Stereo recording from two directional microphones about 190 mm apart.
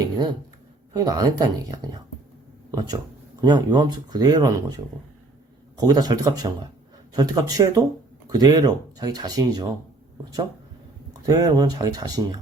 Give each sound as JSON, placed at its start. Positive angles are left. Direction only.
{"t": 0.0, "sound": "a sound", "side_deg": -20}
{"t": 0.9, "sound": "speech", "side_deg": -20}
{"t": 11.1, "sound": "speech", "side_deg": -20}